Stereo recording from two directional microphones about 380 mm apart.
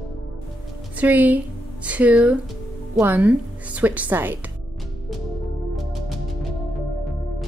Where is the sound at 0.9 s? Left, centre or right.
Centre.